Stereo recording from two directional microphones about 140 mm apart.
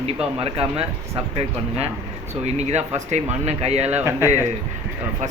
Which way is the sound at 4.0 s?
20° right (ahead or behind).